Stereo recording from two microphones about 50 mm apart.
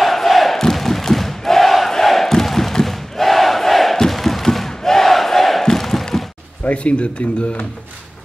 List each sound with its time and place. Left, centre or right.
0.0 s crowd: centre
6.6 s speech: left